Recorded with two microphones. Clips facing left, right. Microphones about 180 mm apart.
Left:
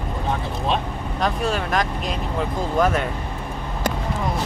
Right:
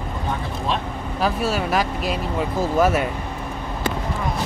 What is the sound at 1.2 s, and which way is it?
Speech, 5° right (ahead or behind).